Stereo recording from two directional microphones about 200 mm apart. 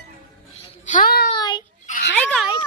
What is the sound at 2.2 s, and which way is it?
Speech, 5° left (ahead or behind).